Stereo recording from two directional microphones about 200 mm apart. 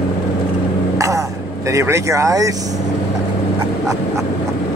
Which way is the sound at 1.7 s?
15° right (ahead or behind).